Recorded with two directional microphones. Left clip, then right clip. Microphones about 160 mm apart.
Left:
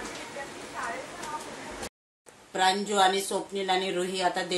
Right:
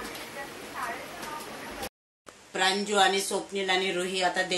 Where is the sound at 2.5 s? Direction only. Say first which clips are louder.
Even; 5° left (ahead or behind).